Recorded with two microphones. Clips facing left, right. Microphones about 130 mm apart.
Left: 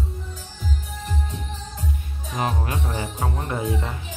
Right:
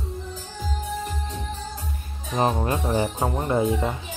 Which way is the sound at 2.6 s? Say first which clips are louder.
Right 5 dB; 25° right (ahead or behind).